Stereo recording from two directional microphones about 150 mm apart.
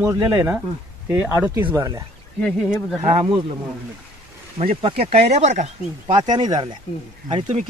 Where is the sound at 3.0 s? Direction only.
35° right (ahead or behind).